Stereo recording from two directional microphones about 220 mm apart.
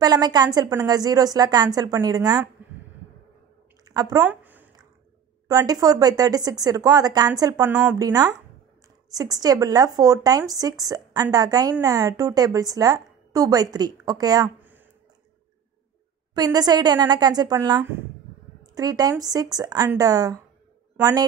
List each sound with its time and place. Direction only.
0.0 s speech: 20° right (ahead or behind)
3.8 s a sound: 15° right (ahead or behind)
5.5 s speech: 15° right (ahead or behind)
16.3 s speech: 15° right (ahead or behind)